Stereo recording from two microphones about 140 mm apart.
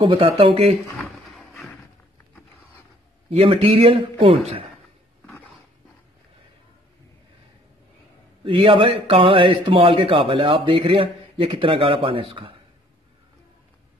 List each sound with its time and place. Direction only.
0.0 s speech: 40° right (ahead or behind)
0.9 s a sound: 5° left (ahead or behind)
3.3 s a man's voice: 45° right (ahead or behind)
8.5 s speech: 35° right (ahead or behind)